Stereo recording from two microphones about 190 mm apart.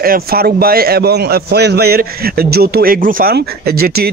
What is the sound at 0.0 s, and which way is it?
A man's voice, 50° right (ahead or behind).